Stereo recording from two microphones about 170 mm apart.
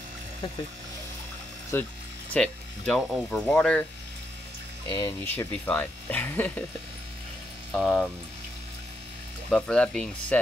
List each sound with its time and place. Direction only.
1.7 s speech: 15° left (ahead or behind)
4.8 s speech: 25° left (ahead or behind)
5.2 s speech: 10° left (ahead or behind)
7.7 s speech: centre (ahead or behind)
9.5 s speech: 5° left (ahead or behind)